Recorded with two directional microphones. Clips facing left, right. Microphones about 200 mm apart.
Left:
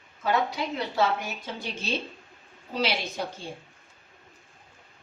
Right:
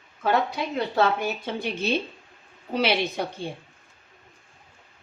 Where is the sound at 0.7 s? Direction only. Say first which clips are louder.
Right 4 dB; 60° right (ahead or behind).